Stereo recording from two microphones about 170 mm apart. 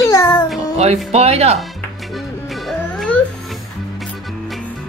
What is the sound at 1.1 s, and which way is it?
Speech, 40° right (ahead or behind).